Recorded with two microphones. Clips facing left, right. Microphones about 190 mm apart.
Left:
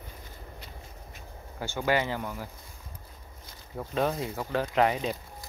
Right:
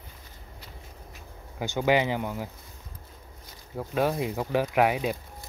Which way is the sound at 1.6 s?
15° right (ahead or behind).